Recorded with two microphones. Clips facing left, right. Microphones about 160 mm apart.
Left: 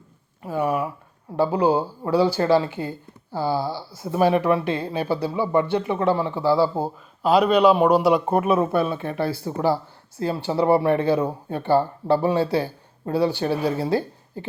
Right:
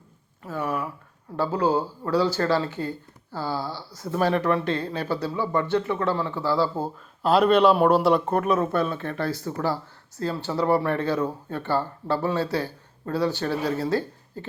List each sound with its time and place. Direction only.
0.4 s speech: 15° left (ahead or behind)
6.8 s speech: centre (ahead or behind)